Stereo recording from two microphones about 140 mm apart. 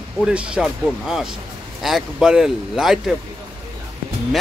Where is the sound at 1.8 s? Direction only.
5° right (ahead or behind).